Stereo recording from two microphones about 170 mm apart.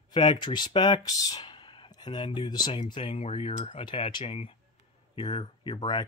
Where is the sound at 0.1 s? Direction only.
30° left (ahead or behind).